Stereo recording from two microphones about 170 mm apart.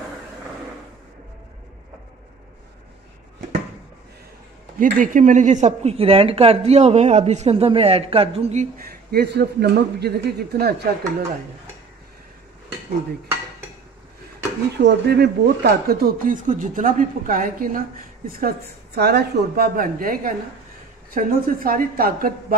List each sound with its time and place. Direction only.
4.7 s a woman's voice: 55° right (ahead or behind)
8.7 s a man's voice: 60° right (ahead or behind)
14.8 s speech: 80° right; by 18.5 s 55° right (ahead or behind)
18.9 s speech: 70° right (ahead or behind)